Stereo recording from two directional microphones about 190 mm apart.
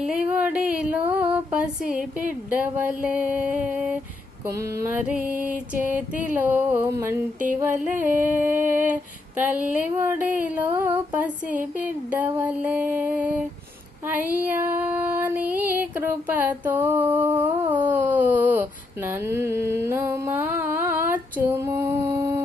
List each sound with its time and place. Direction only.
0.0 s a sound: 5° right (ahead or behind)
2.1 s female singing: 5° right (ahead or behind)
7.7 s music: 45° right (ahead or behind)
8.1 s female singing: 10° right (ahead or behind)